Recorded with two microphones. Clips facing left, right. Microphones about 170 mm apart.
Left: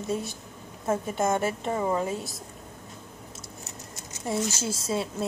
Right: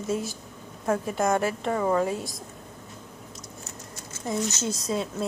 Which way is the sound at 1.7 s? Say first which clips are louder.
Right 4 dB; 20° left (ahead or behind).